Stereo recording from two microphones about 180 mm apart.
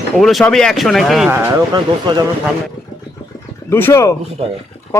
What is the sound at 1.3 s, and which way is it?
Speech, 20° right (ahead or behind).